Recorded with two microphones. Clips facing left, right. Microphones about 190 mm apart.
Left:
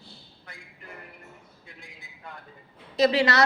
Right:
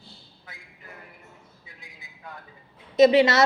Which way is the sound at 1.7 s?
Centre (ahead or behind).